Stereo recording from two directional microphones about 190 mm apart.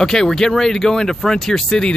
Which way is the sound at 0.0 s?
5° left (ahead or behind).